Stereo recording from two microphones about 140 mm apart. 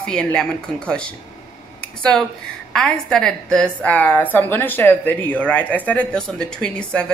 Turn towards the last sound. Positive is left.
turn(degrees=5)  # may be behind; listen again after turning